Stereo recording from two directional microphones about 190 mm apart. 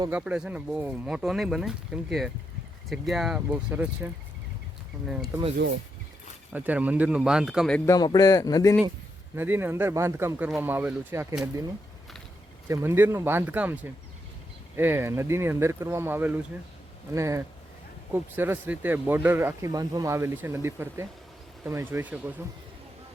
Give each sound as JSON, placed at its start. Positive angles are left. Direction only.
{"t": 0.1, "sound": "speech", "side_deg": -5}
{"t": 6.5, "sound": "speech", "side_deg": -10}
{"t": 7.9, "sound": "speech", "side_deg": 20}
{"t": 9.3, "sound": "speech", "side_deg": -10}
{"t": 12.6, "sound": "speech", "side_deg": -15}